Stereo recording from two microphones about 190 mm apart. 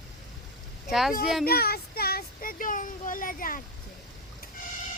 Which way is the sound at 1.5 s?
55° left (ahead or behind).